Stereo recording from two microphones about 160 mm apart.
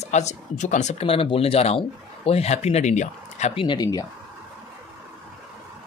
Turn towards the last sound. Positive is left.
turn(degrees=25)  # may be behind; listen again after turning